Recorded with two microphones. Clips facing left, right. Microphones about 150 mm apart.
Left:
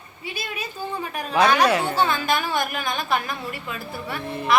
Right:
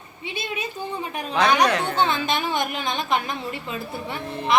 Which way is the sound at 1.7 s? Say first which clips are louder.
Left 2 dB; 5° left (ahead or behind).